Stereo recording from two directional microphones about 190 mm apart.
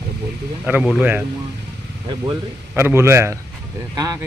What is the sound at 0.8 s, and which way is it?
Speech, 5° right (ahead or behind).